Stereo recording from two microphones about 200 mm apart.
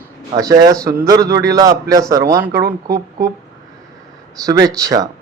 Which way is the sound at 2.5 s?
50° right (ahead or behind).